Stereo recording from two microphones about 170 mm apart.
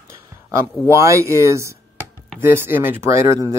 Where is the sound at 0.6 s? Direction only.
15° right (ahead or behind).